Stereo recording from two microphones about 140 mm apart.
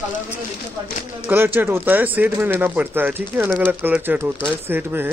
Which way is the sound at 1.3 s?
15° right (ahead or behind).